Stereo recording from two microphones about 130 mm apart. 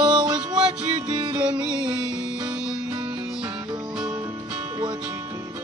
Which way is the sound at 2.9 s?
45° right (ahead or behind).